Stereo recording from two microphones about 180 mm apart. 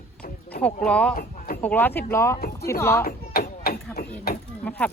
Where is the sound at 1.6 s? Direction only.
10° left (ahead or behind).